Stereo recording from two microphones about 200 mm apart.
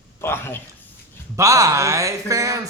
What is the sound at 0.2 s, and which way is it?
Speech, 10° left (ahead or behind).